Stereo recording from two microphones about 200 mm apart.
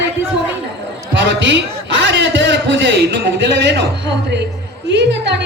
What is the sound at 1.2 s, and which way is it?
A man's voice, 60° right (ahead or behind).